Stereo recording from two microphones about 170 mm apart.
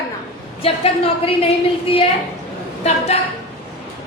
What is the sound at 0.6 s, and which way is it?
Speech, 35° left (ahead or behind).